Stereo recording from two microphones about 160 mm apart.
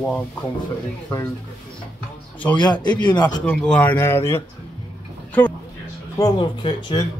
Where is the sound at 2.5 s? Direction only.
25° left (ahead or behind).